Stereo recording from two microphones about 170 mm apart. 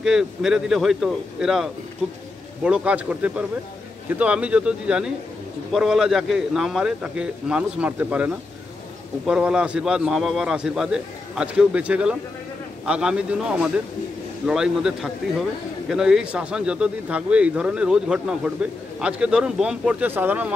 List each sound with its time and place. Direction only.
0.0 s speech: 5° right (ahead or behind)